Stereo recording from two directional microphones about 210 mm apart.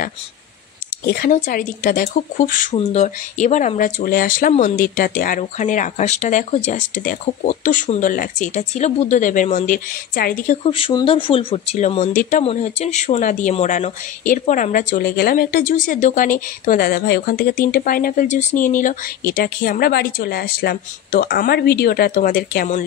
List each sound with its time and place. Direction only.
1.0 s speech: 45° left (ahead or behind)
10.7 s speech: 25° left (ahead or behind); by 22.8 s 40° left (ahead or behind)